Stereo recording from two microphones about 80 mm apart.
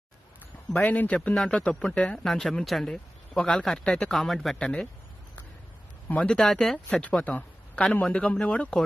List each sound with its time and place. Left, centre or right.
0.7 s a man's voice: left; by 4.6 s centre
4.6 s speech: centre
6.0 s speech: centre
6.9 s speech: centre